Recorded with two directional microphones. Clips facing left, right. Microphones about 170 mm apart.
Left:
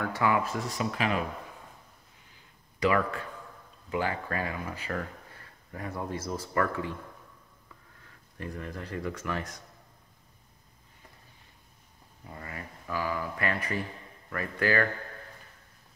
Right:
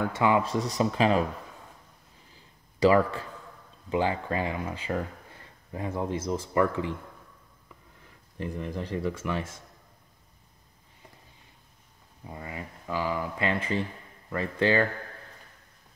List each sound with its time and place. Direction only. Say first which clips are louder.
0.0 s speech: right 3 dB; 20° right (ahead or behind)
2.3 s a sound: right 2 dB; 30° right (ahead or behind)
3.9 s speech: right 4 dB; 25° right (ahead or behind)
8.0 s speech: right 5 dB; 20° right (ahead or behind)
12.3 s speech: right 3 dB; 20° right (ahead or behind)